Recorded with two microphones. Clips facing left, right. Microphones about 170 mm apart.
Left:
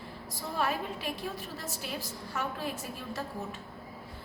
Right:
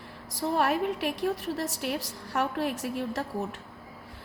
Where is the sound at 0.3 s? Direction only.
65° right (ahead or behind).